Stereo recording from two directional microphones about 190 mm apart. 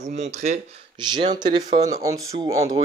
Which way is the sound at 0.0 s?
35° right (ahead or behind).